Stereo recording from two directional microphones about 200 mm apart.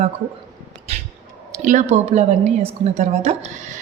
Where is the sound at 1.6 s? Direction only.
40° right (ahead or behind).